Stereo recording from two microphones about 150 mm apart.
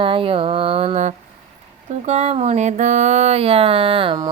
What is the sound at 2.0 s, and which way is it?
Speech, 45° right (ahead or behind).